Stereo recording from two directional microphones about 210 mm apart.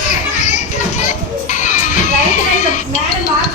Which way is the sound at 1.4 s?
35° left (ahead or behind).